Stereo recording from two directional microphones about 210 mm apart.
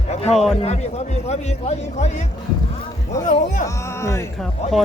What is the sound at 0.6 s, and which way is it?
Speech, 30° left (ahead or behind).